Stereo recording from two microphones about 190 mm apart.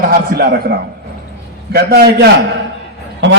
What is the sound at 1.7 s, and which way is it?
Speech, 55° right (ahead or behind).